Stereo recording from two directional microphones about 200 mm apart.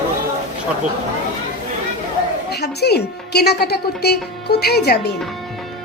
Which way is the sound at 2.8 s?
55° left (ahead or behind).